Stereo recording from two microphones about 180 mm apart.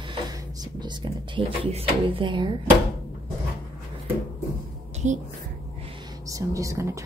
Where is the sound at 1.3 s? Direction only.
30° right (ahead or behind).